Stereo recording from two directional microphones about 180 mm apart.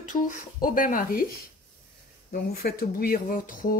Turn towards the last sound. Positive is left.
turn(degrees=50)  # may be behind; listen again after turning